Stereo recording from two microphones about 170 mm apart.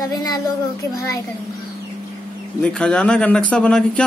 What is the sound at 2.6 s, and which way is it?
Speech, 5° left (ahead or behind).